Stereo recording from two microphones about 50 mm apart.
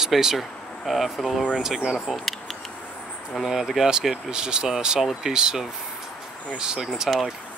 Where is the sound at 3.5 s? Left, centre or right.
Centre.